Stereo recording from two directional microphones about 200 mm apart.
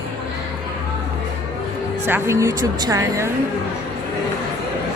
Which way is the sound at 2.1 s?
15° right (ahead or behind).